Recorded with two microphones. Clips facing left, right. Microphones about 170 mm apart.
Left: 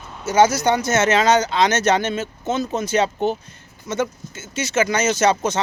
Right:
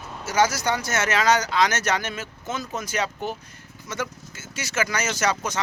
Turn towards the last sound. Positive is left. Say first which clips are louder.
# left 7 dB
turn(degrees=25)  # may be behind; listen again after turning